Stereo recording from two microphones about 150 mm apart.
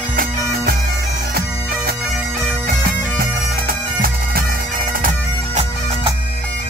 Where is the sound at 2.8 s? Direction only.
80° right.